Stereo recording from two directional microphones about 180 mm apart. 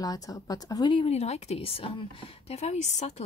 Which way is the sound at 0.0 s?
20° left (ahead or behind).